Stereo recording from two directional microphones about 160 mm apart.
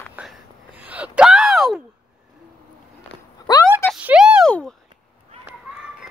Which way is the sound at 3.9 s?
5° right (ahead or behind).